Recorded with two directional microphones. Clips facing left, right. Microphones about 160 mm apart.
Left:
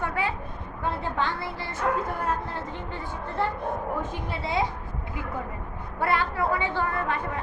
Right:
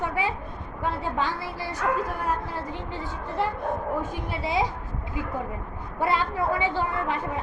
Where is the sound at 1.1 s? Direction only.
10° right (ahead or behind).